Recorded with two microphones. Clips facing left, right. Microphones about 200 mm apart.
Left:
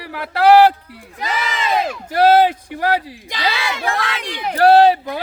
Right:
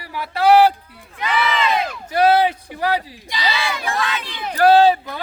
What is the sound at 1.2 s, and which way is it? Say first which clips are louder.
Speech: right 3 dB; 40° left (ahead or behind).